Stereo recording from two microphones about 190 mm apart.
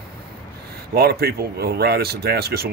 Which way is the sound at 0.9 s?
55° right (ahead or behind).